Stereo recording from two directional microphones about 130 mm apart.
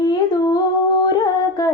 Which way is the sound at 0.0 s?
30° left (ahead or behind).